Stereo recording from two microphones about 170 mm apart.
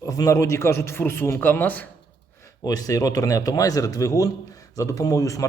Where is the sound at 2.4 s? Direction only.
20° left (ahead or behind).